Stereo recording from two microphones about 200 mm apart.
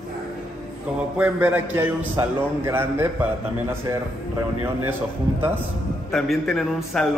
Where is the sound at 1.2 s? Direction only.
5° right (ahead or behind).